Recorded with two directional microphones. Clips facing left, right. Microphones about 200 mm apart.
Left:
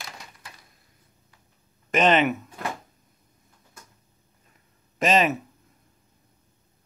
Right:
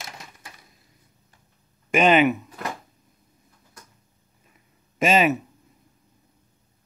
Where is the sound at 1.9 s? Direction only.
10° right (ahead or behind).